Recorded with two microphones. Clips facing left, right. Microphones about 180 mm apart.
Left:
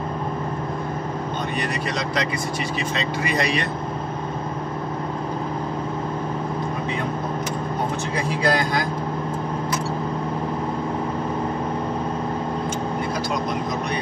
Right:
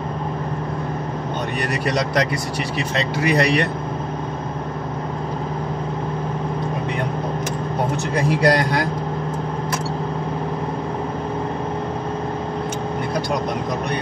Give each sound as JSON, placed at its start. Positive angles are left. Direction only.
{"t": 1.7, "sound": "speech", "side_deg": -65}
{"t": 8.3, "sound": "speech", "side_deg": -65}